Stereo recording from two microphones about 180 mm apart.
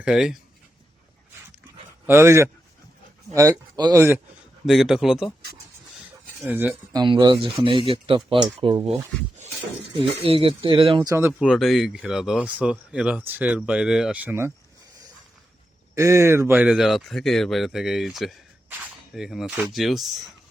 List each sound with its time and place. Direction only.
0.0 s speech: 5° right (ahead or behind)
2.0 s speech: 15° right (ahead or behind)
4.6 s speech: centre (ahead or behind)
6.4 s speech: 10° right (ahead or behind)
6.9 s speech: 25° right (ahead or behind)
10.0 s speech: 30° right (ahead or behind)
11.1 s speech: 15° right (ahead or behind)
11.3 s speech: centre (ahead or behind)
16.0 s speech: 15° right (ahead or behind); by 20.1 s centre (ahead or behind)